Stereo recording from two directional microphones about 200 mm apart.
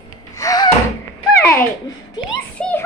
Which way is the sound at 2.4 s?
5° left (ahead or behind).